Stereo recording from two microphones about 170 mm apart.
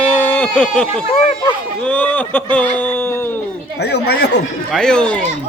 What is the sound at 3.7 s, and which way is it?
Speech, 75° left (ahead or behind).